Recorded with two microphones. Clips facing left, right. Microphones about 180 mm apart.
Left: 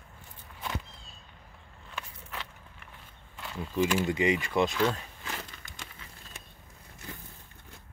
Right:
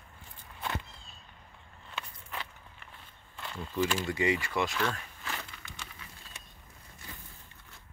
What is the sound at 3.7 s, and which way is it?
Speech, 15° left (ahead or behind).